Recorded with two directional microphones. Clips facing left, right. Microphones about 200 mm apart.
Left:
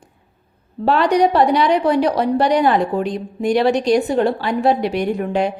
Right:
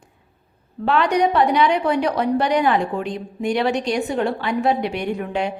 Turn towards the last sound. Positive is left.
turn(degrees=40)  # may be behind; listen again after turning